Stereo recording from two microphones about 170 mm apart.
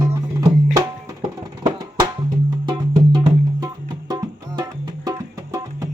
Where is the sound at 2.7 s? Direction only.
25° right (ahead or behind).